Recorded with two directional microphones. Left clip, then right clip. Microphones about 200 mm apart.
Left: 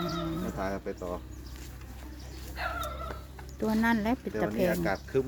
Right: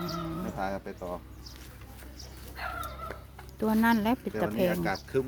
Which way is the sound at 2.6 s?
30° left (ahead or behind).